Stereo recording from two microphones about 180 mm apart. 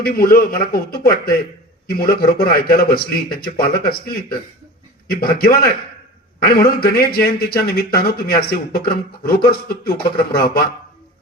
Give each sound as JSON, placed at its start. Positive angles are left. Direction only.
{"t": 0.0, "sound": "speech", "side_deg": 55}